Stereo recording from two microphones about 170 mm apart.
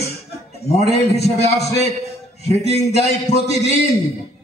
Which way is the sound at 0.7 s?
40° left (ahead or behind).